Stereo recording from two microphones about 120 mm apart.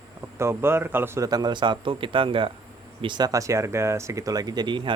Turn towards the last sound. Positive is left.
turn(degrees=-40)  # may be behind; listen again after turning